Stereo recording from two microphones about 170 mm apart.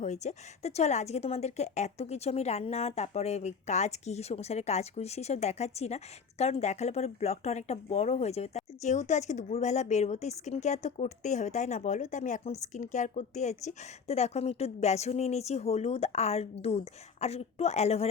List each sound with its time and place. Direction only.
0.0 s speech: 45° left (ahead or behind)